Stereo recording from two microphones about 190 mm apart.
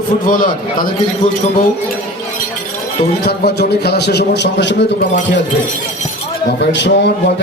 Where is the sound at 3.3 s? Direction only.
60° left (ahead or behind).